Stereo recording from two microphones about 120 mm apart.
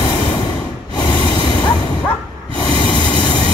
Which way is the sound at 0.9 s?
35° left (ahead or behind).